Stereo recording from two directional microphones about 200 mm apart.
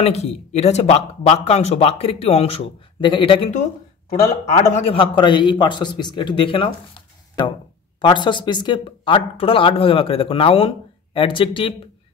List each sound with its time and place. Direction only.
0.0 s a man's voice: 35° left (ahead or behind)